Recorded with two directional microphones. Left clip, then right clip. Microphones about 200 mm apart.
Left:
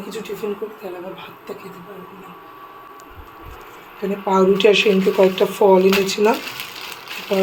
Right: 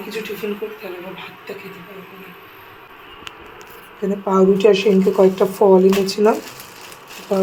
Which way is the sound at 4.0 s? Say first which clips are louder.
Right 1 dB; 5° right (ahead or behind).